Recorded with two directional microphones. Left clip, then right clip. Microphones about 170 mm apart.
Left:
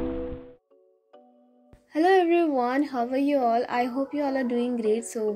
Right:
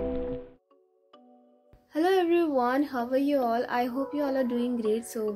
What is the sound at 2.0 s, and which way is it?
A child's voice, 5° left (ahead or behind).